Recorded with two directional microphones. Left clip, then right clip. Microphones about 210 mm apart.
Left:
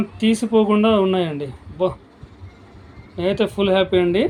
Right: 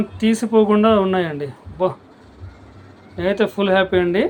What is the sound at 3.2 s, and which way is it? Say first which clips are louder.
Speech: right 1 dB; 5° left (ahead or behind).